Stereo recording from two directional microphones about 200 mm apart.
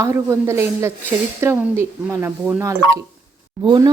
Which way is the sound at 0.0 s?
15° right (ahead or behind).